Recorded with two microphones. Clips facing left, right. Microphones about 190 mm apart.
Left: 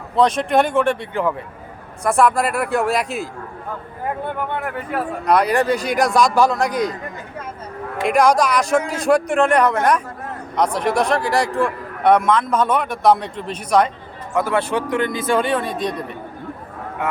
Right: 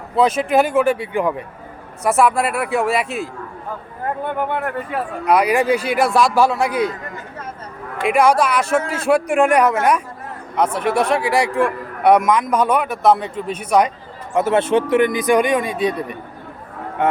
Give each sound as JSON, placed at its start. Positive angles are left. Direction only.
{"t": 0.2, "sound": "speech", "side_deg": -5}
{"t": 4.5, "sound": "a man's voice", "side_deg": 0}
{"t": 7.9, "sound": "a man's voice", "side_deg": -5}
{"t": 14.3, "sound": "a man's voice", "side_deg": -25}